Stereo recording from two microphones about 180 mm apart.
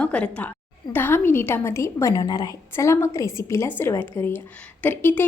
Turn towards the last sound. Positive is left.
turn(degrees=10)  # may be behind; listen again after turning